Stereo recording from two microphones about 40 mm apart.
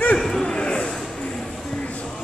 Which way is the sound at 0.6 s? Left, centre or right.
Left.